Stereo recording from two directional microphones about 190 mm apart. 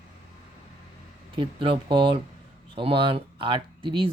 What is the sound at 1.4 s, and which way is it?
A man's voice, 25° right (ahead or behind).